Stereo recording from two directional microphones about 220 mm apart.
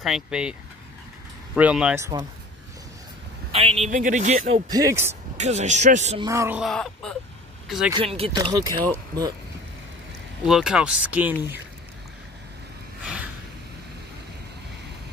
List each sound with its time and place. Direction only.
0.0 s speech: 5° right (ahead or behind)
3.5 s a man's voice: 25° right (ahead or behind)
4.6 s speech: 15° right (ahead or behind)
5.4 s a man's voice: 30° right (ahead or behind)
6.2 s speech: 15° right (ahead or behind)
6.6 s speech: centre (ahead or behind)
7.9 s speech: 25° right (ahead or behind)
10.4 s speech: centre (ahead or behind)
13.0 s a sound: 5° right (ahead or behind)